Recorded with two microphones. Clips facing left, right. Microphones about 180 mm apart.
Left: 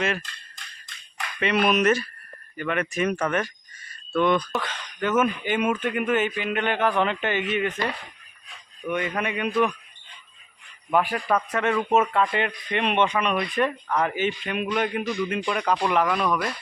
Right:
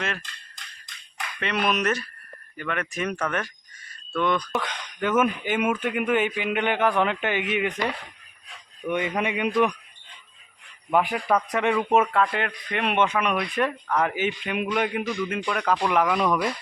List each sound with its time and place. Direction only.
1.4 s speech: 5° left (ahead or behind)
4.6 s speech: 15° right (ahead or behind)
8.9 s speech: 15° right (ahead or behind)
10.9 s speech: 15° right (ahead or behind)
12.1 s speech: centre (ahead or behind)
15.1 s speech: 5° left (ahead or behind)
16.0 s speech: 10° right (ahead or behind)